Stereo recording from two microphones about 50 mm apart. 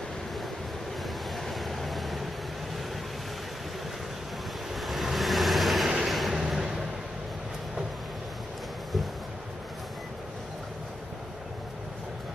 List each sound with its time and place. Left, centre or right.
1.0 s vehicle: centre
4.7 s vehicle: centre
5.9 s a sound: centre